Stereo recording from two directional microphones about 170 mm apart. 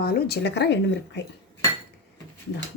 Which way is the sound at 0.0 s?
70° left (ahead or behind).